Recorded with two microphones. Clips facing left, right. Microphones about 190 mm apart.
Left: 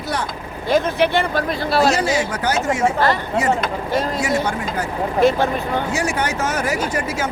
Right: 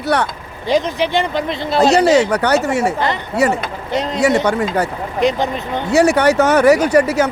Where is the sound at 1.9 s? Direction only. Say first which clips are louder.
Right 8 dB; 70° right (ahead or behind).